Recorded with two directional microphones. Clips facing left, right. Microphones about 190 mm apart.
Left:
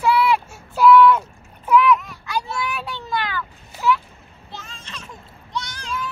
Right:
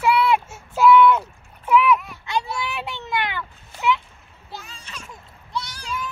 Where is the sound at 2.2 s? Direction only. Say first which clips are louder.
Even; 25° right (ahead or behind).